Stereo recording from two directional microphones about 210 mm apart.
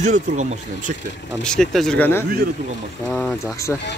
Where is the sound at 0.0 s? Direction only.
35° right (ahead or behind).